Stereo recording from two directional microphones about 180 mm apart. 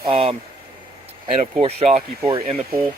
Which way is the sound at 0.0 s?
35° right (ahead or behind).